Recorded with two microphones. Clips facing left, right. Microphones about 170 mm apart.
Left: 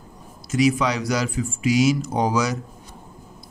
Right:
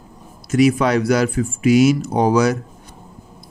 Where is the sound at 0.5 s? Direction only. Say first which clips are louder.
Right 5 dB; 55° right (ahead or behind).